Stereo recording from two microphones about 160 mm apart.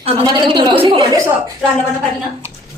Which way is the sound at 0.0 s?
30° right (ahead or behind).